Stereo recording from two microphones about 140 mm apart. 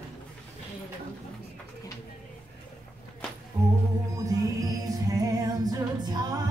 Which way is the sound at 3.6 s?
15° right (ahead or behind).